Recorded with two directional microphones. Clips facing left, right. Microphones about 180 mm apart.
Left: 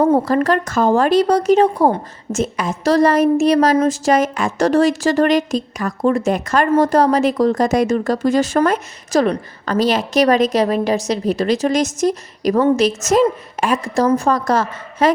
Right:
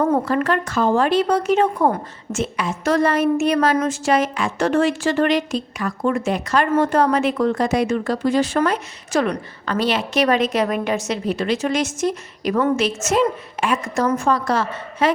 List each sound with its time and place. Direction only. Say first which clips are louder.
0.0 s a woman's voice: left 4 dB; 35° left (ahead or behind)